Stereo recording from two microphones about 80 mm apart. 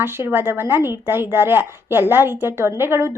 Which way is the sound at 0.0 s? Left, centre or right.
Right.